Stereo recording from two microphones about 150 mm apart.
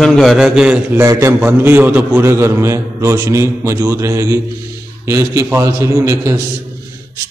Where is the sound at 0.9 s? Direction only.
20° right (ahead or behind).